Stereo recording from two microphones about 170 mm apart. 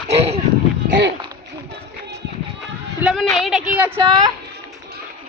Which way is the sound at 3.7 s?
10° right (ahead or behind).